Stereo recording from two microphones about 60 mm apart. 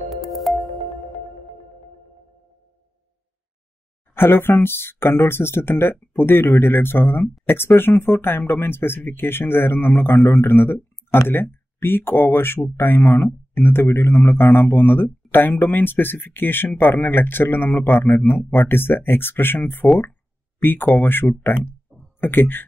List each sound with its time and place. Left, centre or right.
0.1 s music: centre
4.1 s speech: left